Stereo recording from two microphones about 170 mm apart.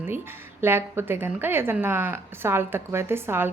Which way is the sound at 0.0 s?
15° right (ahead or behind).